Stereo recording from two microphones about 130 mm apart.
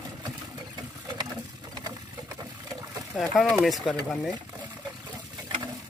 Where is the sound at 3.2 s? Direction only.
5° right (ahead or behind).